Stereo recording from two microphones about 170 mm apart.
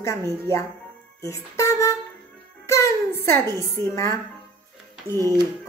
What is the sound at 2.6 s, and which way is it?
Music, 15° left (ahead or behind).